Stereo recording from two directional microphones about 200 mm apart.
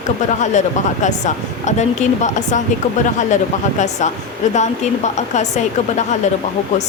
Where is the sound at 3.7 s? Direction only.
35° left (ahead or behind).